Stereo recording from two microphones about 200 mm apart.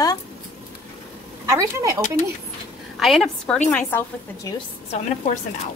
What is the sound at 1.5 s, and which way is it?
Speech, 15° right (ahead or behind).